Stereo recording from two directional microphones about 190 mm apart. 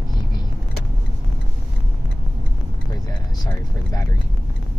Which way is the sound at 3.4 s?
20° left (ahead or behind).